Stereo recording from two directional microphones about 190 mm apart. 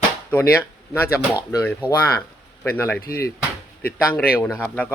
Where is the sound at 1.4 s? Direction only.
10° left (ahead or behind).